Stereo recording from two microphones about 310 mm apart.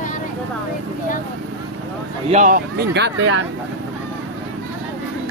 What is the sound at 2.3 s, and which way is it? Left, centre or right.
Speech, right.